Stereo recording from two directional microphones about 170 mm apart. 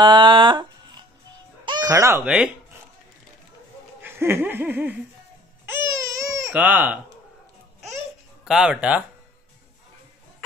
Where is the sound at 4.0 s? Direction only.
15° right (ahead or behind).